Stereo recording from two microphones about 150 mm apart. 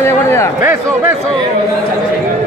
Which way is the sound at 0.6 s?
20° right (ahead or behind).